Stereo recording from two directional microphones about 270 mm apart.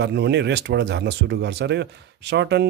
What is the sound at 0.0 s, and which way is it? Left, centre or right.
Speech, right.